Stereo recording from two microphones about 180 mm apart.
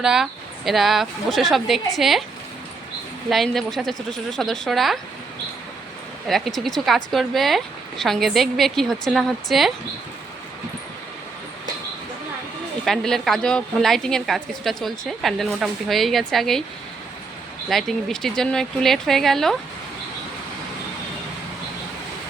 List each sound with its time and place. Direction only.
0.0 s a woman's voice: centre (ahead or behind)
3.2 s a woman's voice: centre (ahead or behind)
6.2 s a woman's voice: centre (ahead or behind)
12.8 s a woman's voice: centre (ahead or behind)
17.7 s a woman's voice: centre (ahead or behind)